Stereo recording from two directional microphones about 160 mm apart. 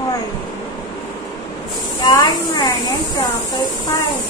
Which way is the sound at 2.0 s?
25° left (ahead or behind).